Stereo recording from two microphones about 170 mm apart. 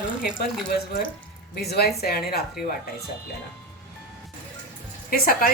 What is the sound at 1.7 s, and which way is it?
Speech, 65° left (ahead or behind).